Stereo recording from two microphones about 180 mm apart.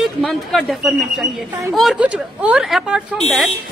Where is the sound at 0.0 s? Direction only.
Centre (ahead or behind).